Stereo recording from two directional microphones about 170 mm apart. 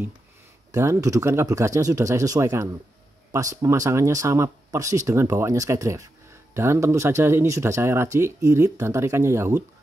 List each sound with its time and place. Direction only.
0.7 s speech: 15° right (ahead or behind)